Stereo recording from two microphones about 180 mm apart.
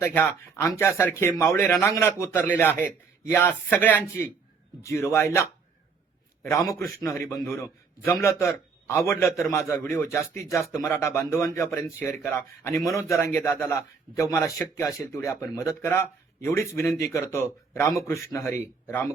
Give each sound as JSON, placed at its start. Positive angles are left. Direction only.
{"t": 0.0, "sound": "a man's voice", "side_deg": 10}